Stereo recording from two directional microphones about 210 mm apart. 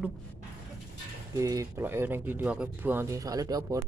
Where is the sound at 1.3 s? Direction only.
15° right (ahead or behind).